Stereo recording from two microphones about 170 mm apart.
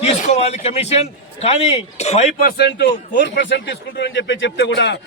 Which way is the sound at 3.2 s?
90° left.